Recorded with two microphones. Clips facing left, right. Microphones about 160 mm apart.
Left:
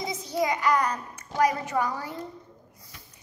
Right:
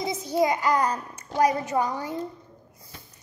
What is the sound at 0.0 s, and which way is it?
A child's voice, 25° right (ahead or behind).